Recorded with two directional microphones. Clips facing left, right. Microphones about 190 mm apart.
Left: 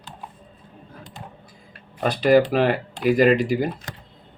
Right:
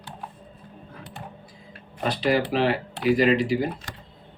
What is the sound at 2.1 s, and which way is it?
Speech, 50° left (ahead or behind).